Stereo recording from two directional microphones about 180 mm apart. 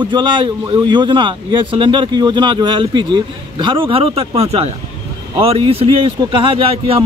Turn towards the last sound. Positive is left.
turn(degrees=-30)  # may be behind; listen again after turning